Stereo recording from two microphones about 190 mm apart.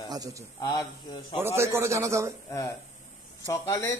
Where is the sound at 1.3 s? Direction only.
15° right (ahead or behind).